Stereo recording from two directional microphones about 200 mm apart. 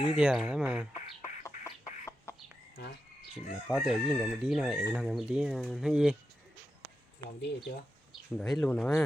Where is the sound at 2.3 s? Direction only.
15° left (ahead or behind).